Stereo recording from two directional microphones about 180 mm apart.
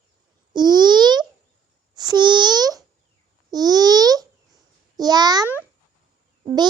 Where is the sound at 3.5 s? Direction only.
20° right (ahead or behind).